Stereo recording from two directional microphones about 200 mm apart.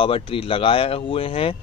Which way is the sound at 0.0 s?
25° left (ahead or behind).